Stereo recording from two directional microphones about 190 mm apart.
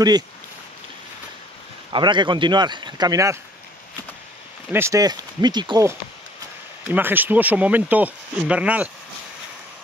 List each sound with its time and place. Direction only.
1.9 s speech: 25° right (ahead or behind)
4.6 s speech: 15° right (ahead or behind)
6.8 s speech: 10° right (ahead or behind)